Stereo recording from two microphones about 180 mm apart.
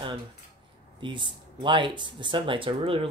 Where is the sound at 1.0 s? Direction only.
25° right (ahead or behind).